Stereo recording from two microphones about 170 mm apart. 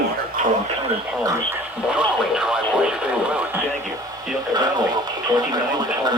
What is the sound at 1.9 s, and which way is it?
Speech, 5° right (ahead or behind).